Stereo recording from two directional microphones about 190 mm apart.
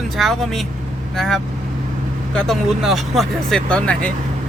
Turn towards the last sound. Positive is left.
turn(degrees=5)  # may be behind; listen again after turning